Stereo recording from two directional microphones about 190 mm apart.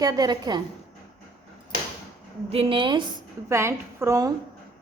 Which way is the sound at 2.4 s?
30° right (ahead or behind).